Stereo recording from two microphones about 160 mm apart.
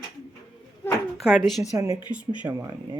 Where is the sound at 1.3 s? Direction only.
Centre (ahead or behind).